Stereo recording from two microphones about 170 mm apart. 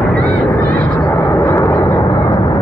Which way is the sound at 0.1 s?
10° left (ahead or behind).